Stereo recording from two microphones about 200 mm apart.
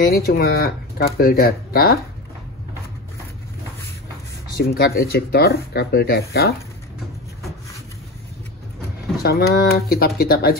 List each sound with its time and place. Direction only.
0.0 s speech: 50° left (ahead or behind)
4.6 s speech: 50° left (ahead or behind)
9.2 s speech: 50° left (ahead or behind)